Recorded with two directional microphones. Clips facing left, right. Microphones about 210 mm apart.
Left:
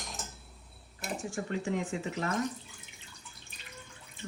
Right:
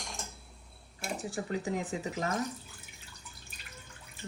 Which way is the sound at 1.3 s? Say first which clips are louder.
Left 1 dB; 35° right (ahead or behind).